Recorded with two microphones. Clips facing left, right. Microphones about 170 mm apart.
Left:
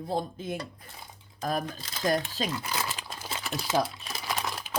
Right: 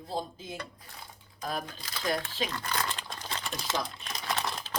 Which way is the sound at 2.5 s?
10° left (ahead or behind).